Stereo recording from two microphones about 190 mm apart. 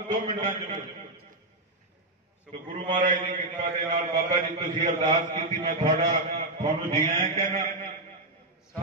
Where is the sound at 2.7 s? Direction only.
40° right (ahead or behind).